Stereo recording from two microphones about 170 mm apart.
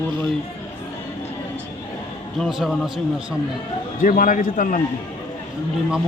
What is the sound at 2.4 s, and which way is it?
Speech, centre (ahead or behind).